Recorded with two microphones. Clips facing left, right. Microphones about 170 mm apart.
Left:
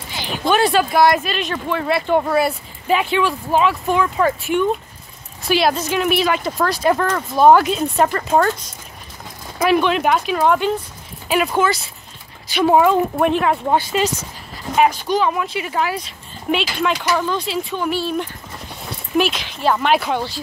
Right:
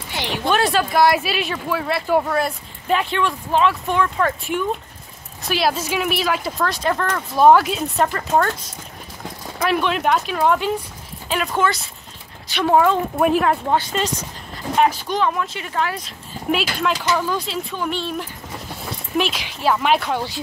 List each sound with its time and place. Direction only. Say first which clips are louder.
0.1 s a sound: right 2 dB; 75° right (ahead or behind)
0.5 s speech: left 3 dB; centre (ahead or behind)
9.7 s speech: left 3 dB; centre (ahead or behind)